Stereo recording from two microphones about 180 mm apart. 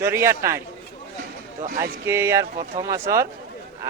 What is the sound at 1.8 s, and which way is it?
A man's voice, 15° right (ahead or behind).